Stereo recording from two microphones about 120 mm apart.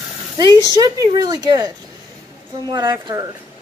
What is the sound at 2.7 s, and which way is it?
Speech, 35° right (ahead or behind).